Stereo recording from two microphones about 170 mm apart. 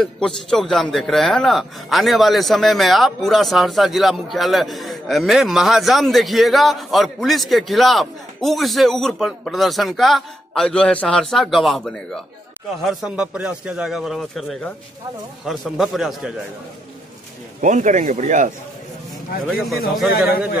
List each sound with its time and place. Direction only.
0.0 s a man's voice: 5° left (ahead or behind)
17.6 s speech: 45° right (ahead or behind)
19.4 s a man's voice: centre (ahead or behind)